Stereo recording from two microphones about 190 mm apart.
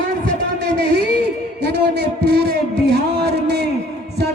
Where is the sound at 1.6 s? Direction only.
60° right (ahead or behind).